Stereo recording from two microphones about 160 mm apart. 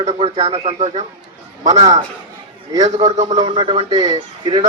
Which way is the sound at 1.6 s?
25° right (ahead or behind).